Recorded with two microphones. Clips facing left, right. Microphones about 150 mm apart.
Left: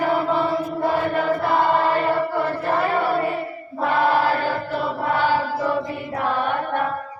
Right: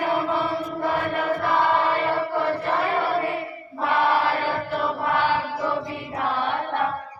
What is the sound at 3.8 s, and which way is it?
Choir, 40° left (ahead or behind).